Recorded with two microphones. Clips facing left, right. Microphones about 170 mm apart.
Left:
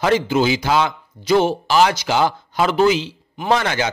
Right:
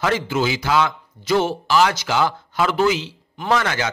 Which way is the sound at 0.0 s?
20° left (ahead or behind).